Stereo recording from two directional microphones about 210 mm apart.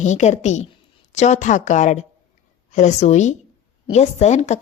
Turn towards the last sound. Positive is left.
turn(degrees=35)  # may be behind; listen again after turning